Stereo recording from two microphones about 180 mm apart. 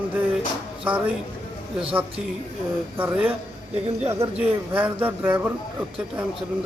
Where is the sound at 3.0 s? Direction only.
10° right (ahead or behind).